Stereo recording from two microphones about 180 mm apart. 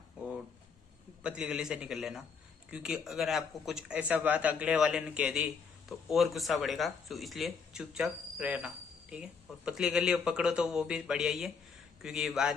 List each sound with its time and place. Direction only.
1.2 s a man's voice: 5° right (ahead or behind)